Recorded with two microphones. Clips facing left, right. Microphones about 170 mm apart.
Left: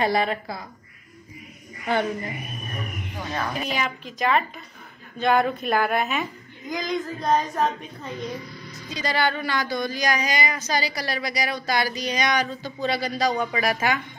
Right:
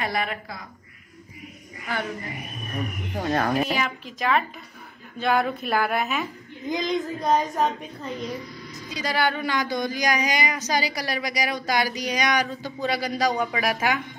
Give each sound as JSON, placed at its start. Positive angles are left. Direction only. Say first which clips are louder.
{"t": 0.0, "sound": "a woman's voice", "louder": "left 5 dB", "side_deg": 30}
{"t": 1.9, "sound": "speech", "louder": "left 6 dB", "side_deg": 20}
{"t": 2.3, "sound": "a woman's voice", "louder": "left 1 dB", "side_deg": 0}
{"t": 3.1, "sound": "speech", "louder": "right 6 dB", "side_deg": -40}
{"t": 3.5, "sound": "a woman's voice", "louder": "right 3 dB", "side_deg": 0}
{"t": 8.7, "sound": "a woman's voice", "louder": "even", "side_deg": -10}